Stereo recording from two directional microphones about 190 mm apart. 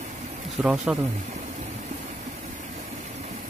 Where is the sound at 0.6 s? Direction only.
5° right (ahead or behind).